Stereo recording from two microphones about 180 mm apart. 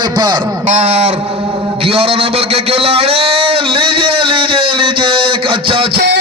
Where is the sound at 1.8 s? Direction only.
30° right (ahead or behind).